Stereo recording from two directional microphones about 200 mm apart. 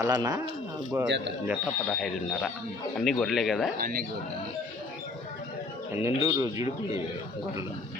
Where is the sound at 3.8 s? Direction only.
45° right (ahead or behind).